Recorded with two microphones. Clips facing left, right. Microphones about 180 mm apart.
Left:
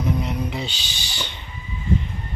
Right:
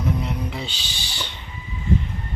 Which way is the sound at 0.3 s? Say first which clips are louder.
Left 2 dB; centre (ahead or behind).